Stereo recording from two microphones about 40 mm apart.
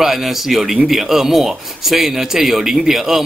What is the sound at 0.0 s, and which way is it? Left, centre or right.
A man's voice, centre.